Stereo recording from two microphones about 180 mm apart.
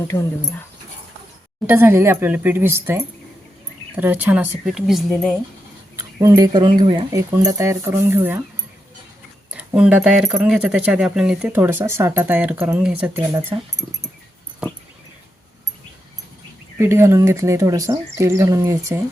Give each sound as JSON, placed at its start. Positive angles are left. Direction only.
{"t": 1.6, "sound": "speech", "side_deg": -10}
{"t": 6.0, "sound": "speech", "side_deg": -15}
{"t": 9.5, "sound": "speech", "side_deg": -5}
{"t": 16.7, "sound": "speech", "side_deg": -15}